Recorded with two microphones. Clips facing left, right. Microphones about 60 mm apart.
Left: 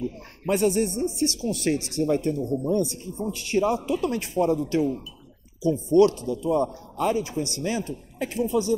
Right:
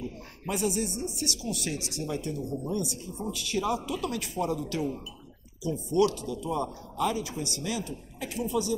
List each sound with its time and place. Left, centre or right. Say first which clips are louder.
0.5 s speech: left 7 dB; left